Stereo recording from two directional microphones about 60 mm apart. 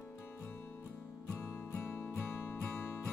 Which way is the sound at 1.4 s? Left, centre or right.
Left.